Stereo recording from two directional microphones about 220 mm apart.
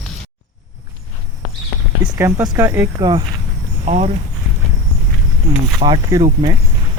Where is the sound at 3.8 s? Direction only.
30° right (ahead or behind).